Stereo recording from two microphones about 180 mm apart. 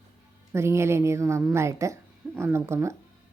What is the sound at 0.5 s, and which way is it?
Speech, 15° right (ahead or behind).